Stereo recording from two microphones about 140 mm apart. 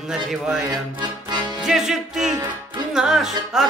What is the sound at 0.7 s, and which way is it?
Music, 30° right (ahead or behind).